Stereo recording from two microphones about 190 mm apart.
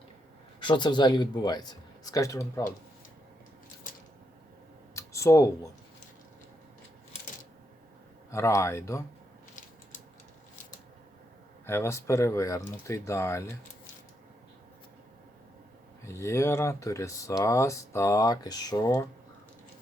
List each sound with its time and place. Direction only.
0.6 s speech: 25° left (ahead or behind)
4.9 s a sound: 15° left (ahead or behind)
8.3 s speech: 15° left (ahead or behind)
11.6 s speech: 15° left (ahead or behind)
16.0 s speech: 15° left (ahead or behind)